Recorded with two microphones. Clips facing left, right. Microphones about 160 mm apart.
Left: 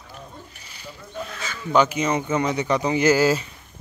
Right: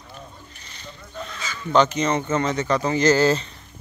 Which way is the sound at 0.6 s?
10° left (ahead or behind).